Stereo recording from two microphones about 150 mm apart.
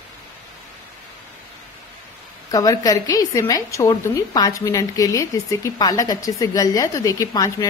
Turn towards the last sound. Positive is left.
turn(degrees=20)  # may be behind; listen again after turning